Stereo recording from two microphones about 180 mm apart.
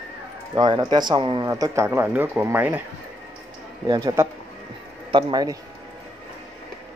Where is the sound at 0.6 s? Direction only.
25° right (ahead or behind).